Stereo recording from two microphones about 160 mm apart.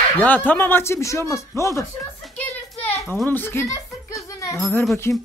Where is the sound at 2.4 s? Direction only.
10° left (ahead or behind).